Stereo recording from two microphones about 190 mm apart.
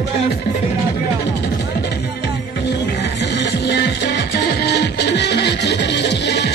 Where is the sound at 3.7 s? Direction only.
65° left (ahead or behind).